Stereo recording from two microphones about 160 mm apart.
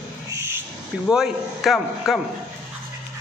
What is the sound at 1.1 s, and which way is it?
A man's voice, centre (ahead or behind).